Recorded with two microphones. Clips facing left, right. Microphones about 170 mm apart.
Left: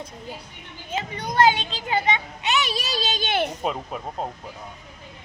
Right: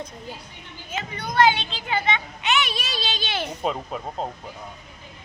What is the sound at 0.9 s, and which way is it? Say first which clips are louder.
A child's voice: even; 35° left (ahead or behind).